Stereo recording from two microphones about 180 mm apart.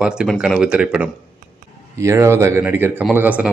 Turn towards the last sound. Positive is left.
turn(degrees=-10)  # may be behind; listen again after turning